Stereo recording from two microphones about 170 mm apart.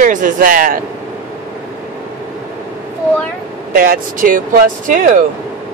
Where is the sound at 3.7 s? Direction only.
55° right (ahead or behind).